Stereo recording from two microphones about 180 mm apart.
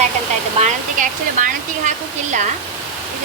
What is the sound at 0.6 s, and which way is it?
Hair dryer, 45° right (ahead or behind).